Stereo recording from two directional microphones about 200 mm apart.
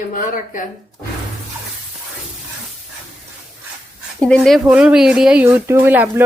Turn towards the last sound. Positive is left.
turn(degrees=-10)  # may be behind; listen again after turning